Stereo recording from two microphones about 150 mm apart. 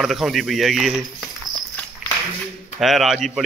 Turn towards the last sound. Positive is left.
turn(degrees=0)  # may be behind; listen again after turning